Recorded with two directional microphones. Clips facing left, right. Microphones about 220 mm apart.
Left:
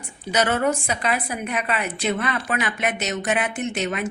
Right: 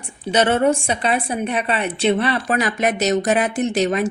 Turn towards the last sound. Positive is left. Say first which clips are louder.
# right 7 dB
turn(degrees=-35)  # may be behind; listen again after turning